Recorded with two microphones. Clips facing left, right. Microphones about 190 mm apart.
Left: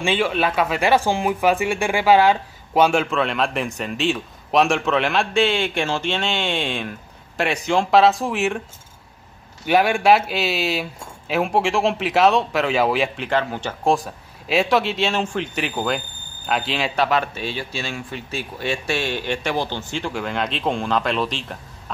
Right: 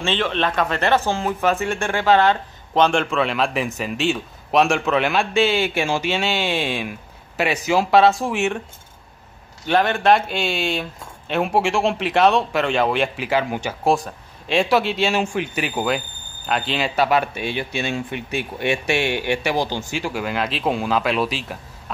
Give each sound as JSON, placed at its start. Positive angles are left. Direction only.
{"t": 0.0, "sound": "speech", "side_deg": 10}
{"t": 9.7, "sound": "speech", "side_deg": 10}
{"t": 13.9, "sound": "speech", "side_deg": 5}
{"t": 17.4, "sound": "speech", "side_deg": -15}
{"t": 18.1, "sound": "speech", "side_deg": -60}
{"t": 18.9, "sound": "speech", "side_deg": -15}